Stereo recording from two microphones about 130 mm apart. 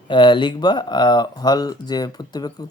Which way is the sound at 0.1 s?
40° left (ahead or behind).